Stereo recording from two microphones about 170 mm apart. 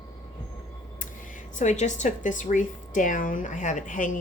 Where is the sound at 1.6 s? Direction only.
45° left (ahead or behind).